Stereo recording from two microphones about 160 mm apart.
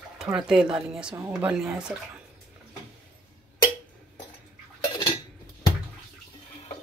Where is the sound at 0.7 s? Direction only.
5° right (ahead or behind).